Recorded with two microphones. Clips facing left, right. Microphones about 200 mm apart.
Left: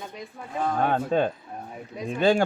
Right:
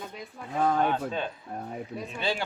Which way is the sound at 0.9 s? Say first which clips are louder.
Left 6 dB; 50° left (ahead or behind).